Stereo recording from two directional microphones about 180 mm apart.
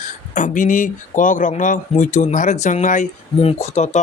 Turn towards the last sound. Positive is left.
turn(degrees=40)  # may be behind; listen again after turning